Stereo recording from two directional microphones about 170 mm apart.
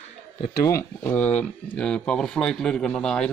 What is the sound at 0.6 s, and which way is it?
Speech, 15° left (ahead or behind).